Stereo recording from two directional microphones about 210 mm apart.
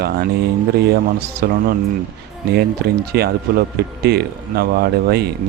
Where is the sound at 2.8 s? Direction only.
50° right (ahead or behind).